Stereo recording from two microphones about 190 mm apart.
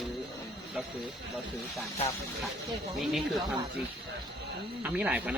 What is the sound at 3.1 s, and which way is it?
Speech, centre (ahead or behind).